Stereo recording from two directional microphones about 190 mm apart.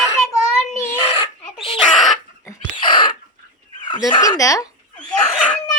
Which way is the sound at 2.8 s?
25° left (ahead or behind).